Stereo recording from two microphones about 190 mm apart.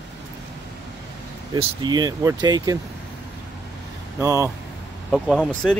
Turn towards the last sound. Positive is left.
turn(degrees=0)  # may be behind; listen again after turning